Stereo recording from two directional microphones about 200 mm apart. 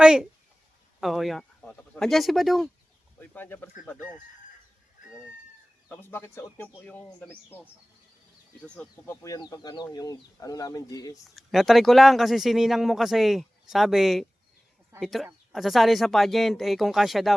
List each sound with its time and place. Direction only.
0.0 s speech: 5° right (ahead or behind)
5.9 s speech: 10° left (ahead or behind)
8.7 s speech: 10° left (ahead or behind)
11.3 s speech: centre (ahead or behind)